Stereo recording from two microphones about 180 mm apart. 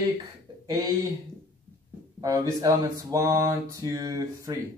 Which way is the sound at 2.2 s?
20° right (ahead or behind).